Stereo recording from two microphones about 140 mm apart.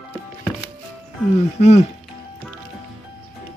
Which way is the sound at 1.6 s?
50° left (ahead or behind).